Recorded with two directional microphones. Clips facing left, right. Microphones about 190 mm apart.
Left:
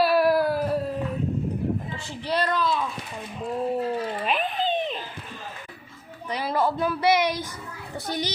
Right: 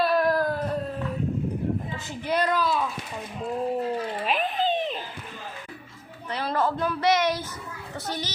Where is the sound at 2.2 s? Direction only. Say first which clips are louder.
Even; 10° right (ahead or behind).